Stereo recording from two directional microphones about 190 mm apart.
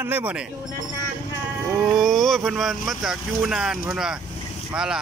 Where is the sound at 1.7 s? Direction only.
5° right (ahead or behind).